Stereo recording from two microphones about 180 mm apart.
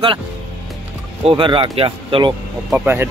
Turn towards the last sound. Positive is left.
turn(degrees=-10)  # may be behind; listen again after turning